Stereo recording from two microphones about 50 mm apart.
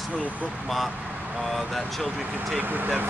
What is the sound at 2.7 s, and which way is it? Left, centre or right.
Speech, right.